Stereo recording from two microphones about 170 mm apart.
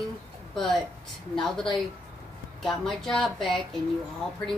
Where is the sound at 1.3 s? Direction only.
5° left (ahead or behind).